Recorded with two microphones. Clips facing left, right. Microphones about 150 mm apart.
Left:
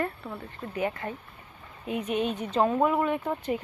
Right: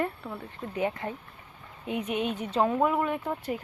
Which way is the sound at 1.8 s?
15° right (ahead or behind).